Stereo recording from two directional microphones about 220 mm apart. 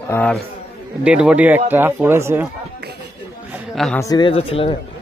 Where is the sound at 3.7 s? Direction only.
Centre (ahead or behind).